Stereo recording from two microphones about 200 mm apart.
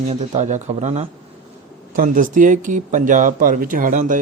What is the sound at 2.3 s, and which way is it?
Speech, 40° right (ahead or behind).